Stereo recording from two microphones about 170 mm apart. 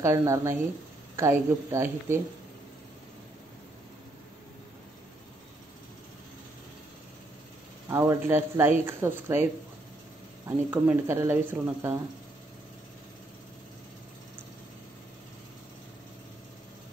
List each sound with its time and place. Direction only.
0.0 s speech: 15° right (ahead or behind)
7.9 s speech: 15° right (ahead or behind)